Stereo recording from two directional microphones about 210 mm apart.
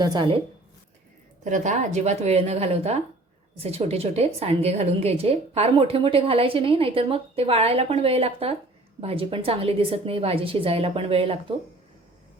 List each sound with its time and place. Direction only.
0.0 s a woman's voice: 20° right (ahead or behind)
1.5 s a woman's voice: 35° right (ahead or behind)